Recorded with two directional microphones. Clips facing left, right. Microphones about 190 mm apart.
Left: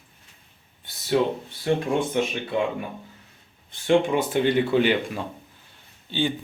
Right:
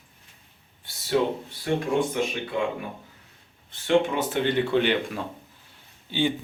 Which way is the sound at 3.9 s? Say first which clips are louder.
Left 2 dB; 10° left (ahead or behind).